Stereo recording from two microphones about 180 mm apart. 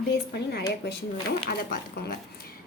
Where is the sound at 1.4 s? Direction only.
55° left (ahead or behind).